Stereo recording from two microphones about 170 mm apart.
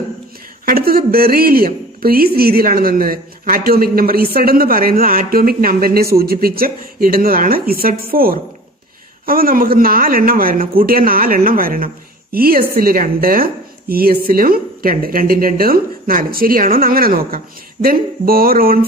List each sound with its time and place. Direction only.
0.7 s a man's voice: 60° right (ahead or behind)